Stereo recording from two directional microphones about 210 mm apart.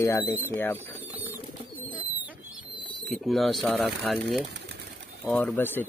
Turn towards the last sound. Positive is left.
turn(degrees=10)  # may be behind; listen again after turning